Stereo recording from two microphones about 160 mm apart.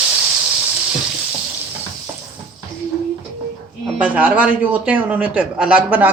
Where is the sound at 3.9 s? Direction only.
10° right (ahead or behind).